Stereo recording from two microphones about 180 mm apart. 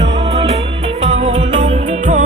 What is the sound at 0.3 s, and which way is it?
Music, 35° right (ahead or behind).